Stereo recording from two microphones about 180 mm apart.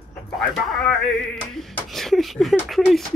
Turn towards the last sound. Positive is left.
turn(degrees=0)  # may be behind; listen again after turning